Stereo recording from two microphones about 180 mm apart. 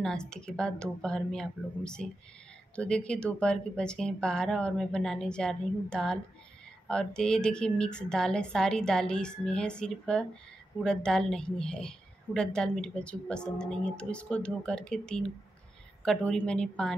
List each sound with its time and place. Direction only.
0.0 s speech: 5° left (ahead or behind)